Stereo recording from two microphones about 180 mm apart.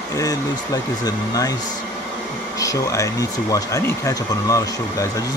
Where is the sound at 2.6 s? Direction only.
20° left (ahead or behind).